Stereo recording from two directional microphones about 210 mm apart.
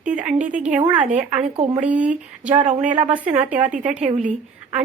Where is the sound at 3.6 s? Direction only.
35° right (ahead or behind).